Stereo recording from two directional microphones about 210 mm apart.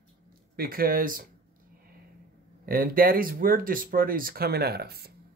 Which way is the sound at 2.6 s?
45° right (ahead or behind).